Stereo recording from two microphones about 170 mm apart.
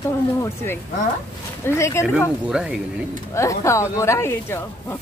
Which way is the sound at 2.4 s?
5° right (ahead or behind).